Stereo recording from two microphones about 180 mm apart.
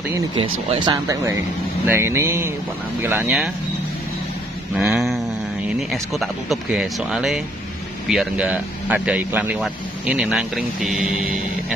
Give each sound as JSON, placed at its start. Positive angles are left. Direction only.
{"t": 0.1, "sound": "speech", "side_deg": -25}
{"t": 4.7, "sound": "a sound", "side_deg": 0}
{"t": 5.8, "sound": "speech", "side_deg": 0}